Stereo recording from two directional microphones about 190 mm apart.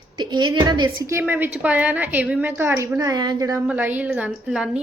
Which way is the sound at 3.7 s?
10° right (ahead or behind).